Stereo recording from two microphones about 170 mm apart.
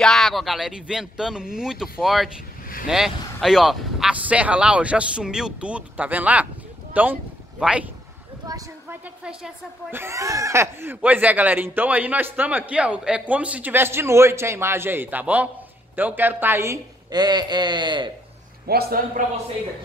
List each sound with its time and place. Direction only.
0.0 s speech: centre (ahead or behind)
8.5 s a sound: 20° right (ahead or behind)
9.0 s a woman's voice: 5° right (ahead or behind); by 18.1 s 25° right (ahead or behind)
18.7 s a man's voice: 65° right (ahead or behind)